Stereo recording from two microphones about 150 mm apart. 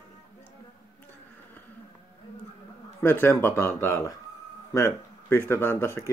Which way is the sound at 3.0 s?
15° left (ahead or behind).